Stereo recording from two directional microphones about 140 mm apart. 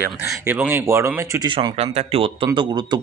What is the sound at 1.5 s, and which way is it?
Speech, 30° right (ahead or behind).